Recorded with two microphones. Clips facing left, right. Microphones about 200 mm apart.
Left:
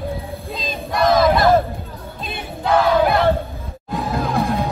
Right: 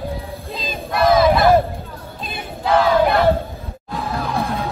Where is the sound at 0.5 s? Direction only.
Centre (ahead or behind).